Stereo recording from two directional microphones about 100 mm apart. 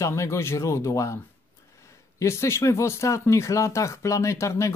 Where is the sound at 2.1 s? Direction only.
30° left (ahead or behind).